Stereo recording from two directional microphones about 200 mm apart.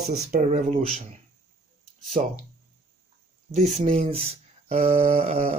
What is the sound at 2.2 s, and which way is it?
Speech, 30° right (ahead or behind).